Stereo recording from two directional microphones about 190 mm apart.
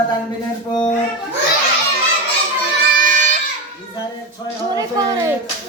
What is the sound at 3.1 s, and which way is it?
Child singing, 40° right (ahead or behind).